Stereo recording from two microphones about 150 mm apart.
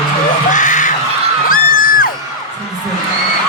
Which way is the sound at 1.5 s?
65° left (ahead or behind).